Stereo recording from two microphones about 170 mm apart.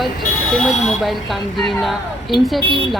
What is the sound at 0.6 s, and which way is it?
Speech, centre (ahead or behind).